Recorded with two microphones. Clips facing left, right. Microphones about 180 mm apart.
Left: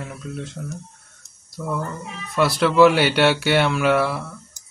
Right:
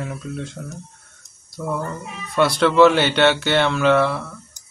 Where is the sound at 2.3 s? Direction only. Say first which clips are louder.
Right 2 dB; 5° left (ahead or behind).